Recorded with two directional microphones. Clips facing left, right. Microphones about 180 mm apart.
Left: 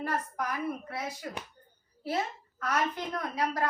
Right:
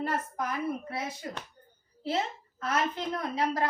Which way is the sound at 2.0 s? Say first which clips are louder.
Right 1 dB; 25° right (ahead or behind).